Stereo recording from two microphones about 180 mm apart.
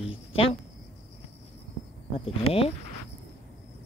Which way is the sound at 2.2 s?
30° left (ahead or behind).